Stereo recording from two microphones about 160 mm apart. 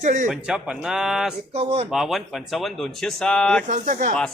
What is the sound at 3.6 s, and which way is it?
Speech, 50° right (ahead or behind).